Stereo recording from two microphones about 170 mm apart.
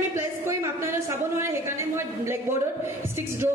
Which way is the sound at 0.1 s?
15° right (ahead or behind).